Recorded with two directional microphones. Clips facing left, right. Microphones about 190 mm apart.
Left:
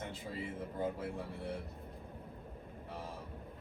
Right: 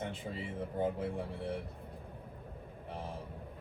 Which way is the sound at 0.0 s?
15° right (ahead or behind).